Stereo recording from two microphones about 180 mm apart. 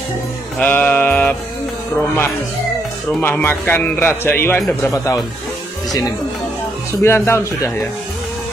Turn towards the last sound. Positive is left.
turn(degrees=15)  # may be behind; listen again after turning